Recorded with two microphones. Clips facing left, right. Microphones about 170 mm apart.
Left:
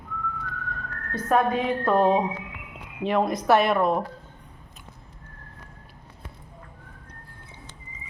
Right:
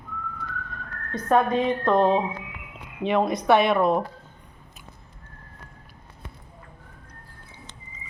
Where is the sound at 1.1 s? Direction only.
5° left (ahead or behind).